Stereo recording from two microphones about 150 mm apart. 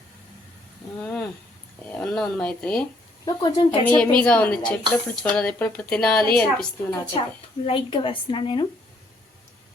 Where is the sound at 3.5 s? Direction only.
30° left (ahead or behind).